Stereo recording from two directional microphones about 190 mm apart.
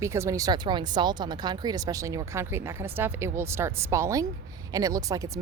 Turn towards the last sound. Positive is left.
turn(degrees=-15)  # may be behind; listen again after turning